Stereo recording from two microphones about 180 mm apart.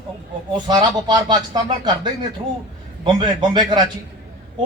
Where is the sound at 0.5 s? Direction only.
25° right (ahead or behind).